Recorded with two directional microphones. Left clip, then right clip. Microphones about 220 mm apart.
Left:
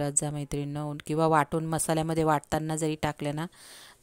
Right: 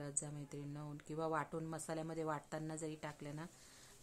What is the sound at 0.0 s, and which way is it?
A woman's voice, 40° left (ahead or behind).